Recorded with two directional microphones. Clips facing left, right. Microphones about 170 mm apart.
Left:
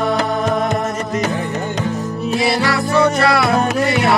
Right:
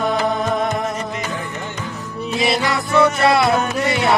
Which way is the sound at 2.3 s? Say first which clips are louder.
Left 2 dB; 20° right (ahead or behind).